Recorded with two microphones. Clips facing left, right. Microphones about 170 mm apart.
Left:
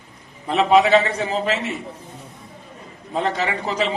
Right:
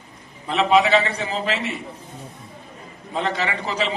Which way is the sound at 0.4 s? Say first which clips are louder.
Left 2 dB; 45° left (ahead or behind).